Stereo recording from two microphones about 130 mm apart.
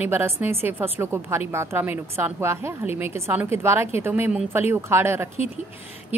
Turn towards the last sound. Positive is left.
turn(degrees=-20)  # may be behind; listen again after turning